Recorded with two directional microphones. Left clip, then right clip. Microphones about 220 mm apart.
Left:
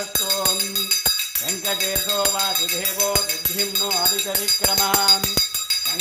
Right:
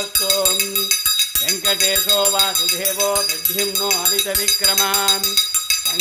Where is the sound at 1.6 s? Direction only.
40° right (ahead or behind).